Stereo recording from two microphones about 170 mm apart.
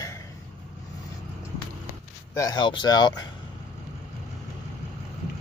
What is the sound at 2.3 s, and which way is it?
Speech, 20° left (ahead or behind).